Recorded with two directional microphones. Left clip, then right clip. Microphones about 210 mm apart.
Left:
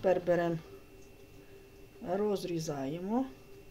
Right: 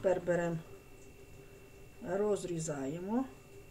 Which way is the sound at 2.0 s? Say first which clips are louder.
Left 1 dB; 20° left (ahead or behind).